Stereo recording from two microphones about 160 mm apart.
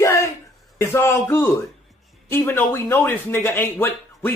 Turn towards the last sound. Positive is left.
turn(degrees=15)  # may be behind; listen again after turning